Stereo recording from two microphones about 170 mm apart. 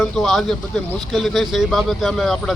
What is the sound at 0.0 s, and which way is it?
Speech, centre (ahead or behind).